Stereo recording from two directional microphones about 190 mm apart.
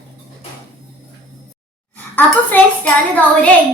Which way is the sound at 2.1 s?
10° left (ahead or behind).